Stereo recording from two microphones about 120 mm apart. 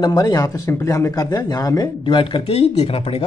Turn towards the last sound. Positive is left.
turn(degrees=55)  # may be behind; listen again after turning